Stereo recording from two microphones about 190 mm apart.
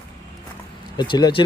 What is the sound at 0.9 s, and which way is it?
Speech, 25° left (ahead or behind).